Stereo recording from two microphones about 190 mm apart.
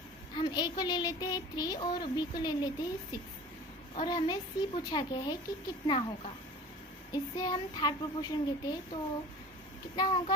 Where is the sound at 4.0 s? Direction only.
25° left (ahead or behind).